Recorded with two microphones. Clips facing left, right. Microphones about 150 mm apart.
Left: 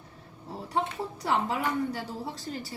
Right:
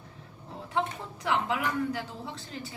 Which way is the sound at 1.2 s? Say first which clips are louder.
Even; 40° left (ahead or behind).